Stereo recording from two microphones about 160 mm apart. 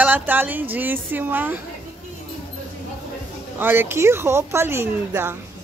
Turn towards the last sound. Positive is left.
turn(degrees=-15)  # may be behind; listen again after turning